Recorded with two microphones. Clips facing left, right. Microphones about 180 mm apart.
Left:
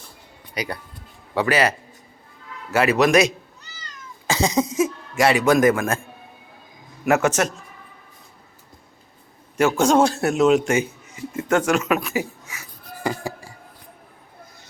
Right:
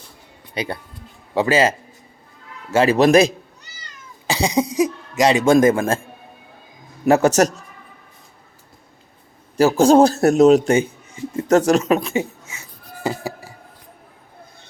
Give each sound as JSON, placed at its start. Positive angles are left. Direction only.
{"t": 0.5, "sound": "a man's voice", "side_deg": -25}
{"t": 4.3, "sound": "a sound", "side_deg": -15}
{"t": 4.7, "sound": "speech", "side_deg": -20}
{"t": 7.0, "sound": "a man's voice", "side_deg": -35}
{"t": 9.6, "sound": "a man's voice", "side_deg": -35}